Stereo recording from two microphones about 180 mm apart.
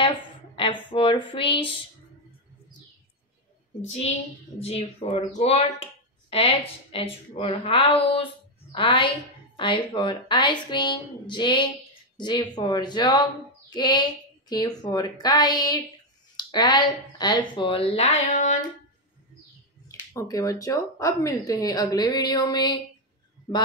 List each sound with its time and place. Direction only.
0.6 s speech: 30° left (ahead or behind)
3.8 s a woman's voice: 35° left (ahead or behind)
19.9 s speech: 20° left (ahead or behind)